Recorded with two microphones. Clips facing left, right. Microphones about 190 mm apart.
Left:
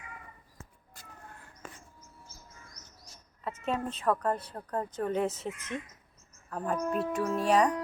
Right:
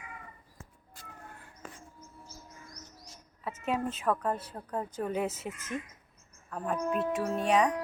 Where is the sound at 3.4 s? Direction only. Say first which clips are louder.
Right 1 dB; 5° right (ahead or behind).